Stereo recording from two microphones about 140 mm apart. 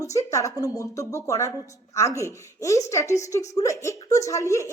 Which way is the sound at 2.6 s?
20° left (ahead or behind).